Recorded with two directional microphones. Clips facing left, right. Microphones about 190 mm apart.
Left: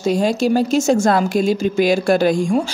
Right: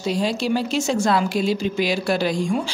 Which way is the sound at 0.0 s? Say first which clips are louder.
Left 6 dB; 45° left (ahead or behind).